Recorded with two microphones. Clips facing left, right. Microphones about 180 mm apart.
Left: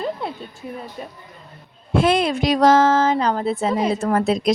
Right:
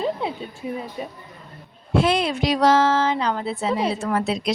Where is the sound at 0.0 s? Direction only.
Centre (ahead or behind).